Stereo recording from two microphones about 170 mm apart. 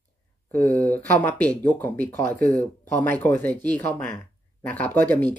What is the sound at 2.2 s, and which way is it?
Speech, 55° right (ahead or behind).